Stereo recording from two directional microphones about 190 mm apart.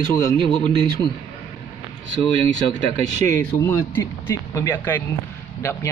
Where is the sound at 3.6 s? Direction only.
10° left (ahead or behind).